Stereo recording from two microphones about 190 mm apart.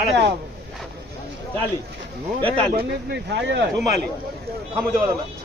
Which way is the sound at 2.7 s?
55° right (ahead or behind).